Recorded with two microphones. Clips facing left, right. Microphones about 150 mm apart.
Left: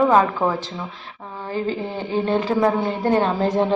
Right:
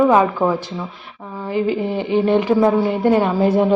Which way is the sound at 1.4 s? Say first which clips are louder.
Right 5 dB; 15° right (ahead or behind).